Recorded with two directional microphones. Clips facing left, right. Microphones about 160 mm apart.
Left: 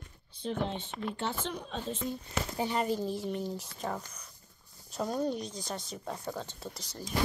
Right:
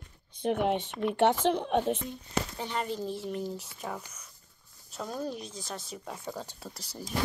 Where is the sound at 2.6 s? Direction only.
5° left (ahead or behind).